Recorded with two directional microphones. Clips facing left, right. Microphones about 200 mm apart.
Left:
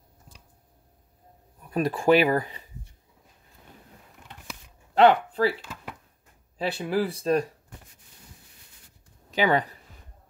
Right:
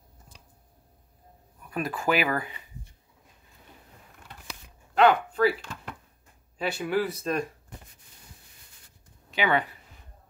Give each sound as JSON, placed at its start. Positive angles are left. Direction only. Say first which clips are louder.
{"t": 1.7, "sound": "speech", "louder": "left 7 dB", "side_deg": 35}
{"t": 4.9, "sound": "speech", "louder": "left 3 dB", "side_deg": 30}
{"t": 5.6, "sound": "a sound", "louder": "even", "side_deg": 5}
{"t": 6.6, "sound": "speech", "louder": "left 1 dB", "side_deg": 30}
{"t": 9.3, "sound": "speech", "louder": "left 3 dB", "side_deg": 40}